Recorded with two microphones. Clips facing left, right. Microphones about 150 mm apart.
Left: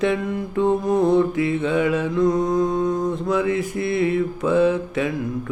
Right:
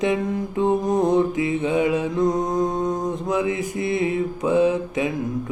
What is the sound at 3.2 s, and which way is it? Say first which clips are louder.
Mantra: left 1 dB; 15° right (ahead or behind).